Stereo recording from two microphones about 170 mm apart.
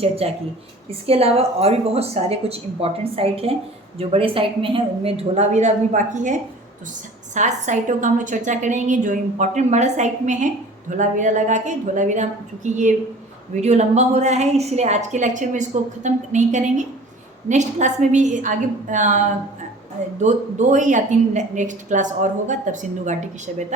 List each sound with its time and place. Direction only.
0.0 s a woman's voice: 35° right (ahead or behind)
20.2 s a woman's voice: 45° right (ahead or behind)